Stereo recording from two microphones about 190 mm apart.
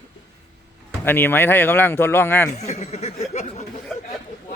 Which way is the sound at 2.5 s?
35° left (ahead or behind).